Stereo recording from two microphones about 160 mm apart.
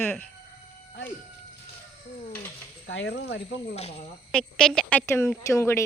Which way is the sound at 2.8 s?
90° left.